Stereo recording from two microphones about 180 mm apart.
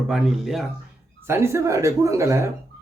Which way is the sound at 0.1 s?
Centre (ahead or behind).